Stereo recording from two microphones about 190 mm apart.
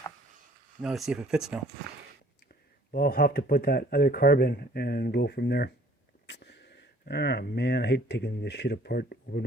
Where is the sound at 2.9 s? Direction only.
50° left (ahead or behind).